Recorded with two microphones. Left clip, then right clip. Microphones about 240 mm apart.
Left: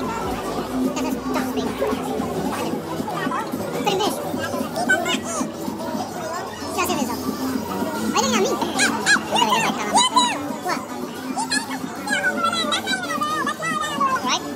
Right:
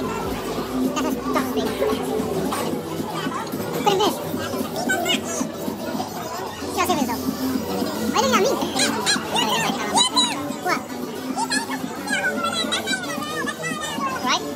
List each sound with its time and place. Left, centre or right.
0.9 s music: centre
3.8 s music: centre
4.8 s music: centre
6.8 s children playing: centre
8.1 s music: centre
8.7 s a sound: left
9.9 s music: left
12.1 s music: centre